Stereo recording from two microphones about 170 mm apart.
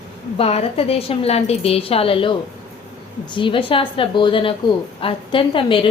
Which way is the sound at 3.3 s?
30° left (ahead or behind).